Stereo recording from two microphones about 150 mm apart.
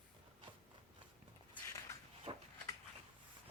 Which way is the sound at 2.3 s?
40° right (ahead or behind).